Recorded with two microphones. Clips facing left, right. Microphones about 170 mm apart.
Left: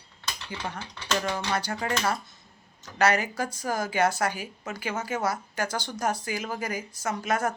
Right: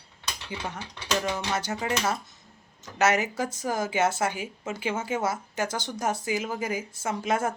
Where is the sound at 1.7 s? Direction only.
5° right (ahead or behind).